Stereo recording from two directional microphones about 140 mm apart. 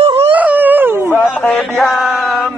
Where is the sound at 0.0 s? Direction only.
45° right (ahead or behind).